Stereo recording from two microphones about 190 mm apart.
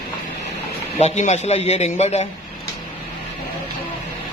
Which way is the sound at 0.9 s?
35° left (ahead or behind).